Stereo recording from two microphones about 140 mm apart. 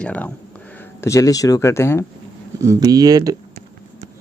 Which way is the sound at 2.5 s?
25° right (ahead or behind).